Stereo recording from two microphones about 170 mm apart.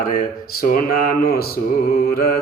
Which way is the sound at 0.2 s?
55° left (ahead or behind).